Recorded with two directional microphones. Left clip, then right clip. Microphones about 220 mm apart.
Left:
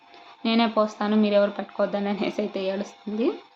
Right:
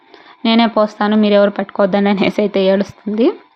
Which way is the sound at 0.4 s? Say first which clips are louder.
Right 9 dB; 35° right (ahead or behind).